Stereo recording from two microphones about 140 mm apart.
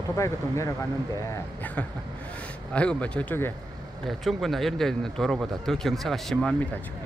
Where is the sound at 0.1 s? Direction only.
20° left (ahead or behind).